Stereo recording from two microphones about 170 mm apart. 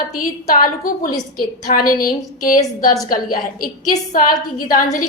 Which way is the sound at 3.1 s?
60° left (ahead or behind).